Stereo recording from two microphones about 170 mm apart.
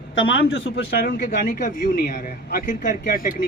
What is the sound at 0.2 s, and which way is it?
A man's voice, 90° left.